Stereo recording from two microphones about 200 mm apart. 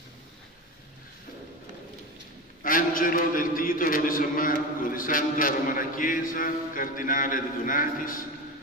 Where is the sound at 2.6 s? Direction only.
45° left (ahead or behind).